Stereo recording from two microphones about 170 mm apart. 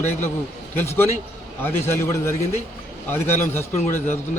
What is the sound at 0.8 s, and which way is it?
Speech, 15° left (ahead or behind).